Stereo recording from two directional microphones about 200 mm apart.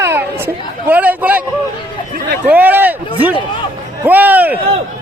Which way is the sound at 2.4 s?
10° right (ahead or behind).